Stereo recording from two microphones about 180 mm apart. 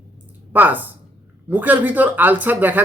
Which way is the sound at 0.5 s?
10° right (ahead or behind).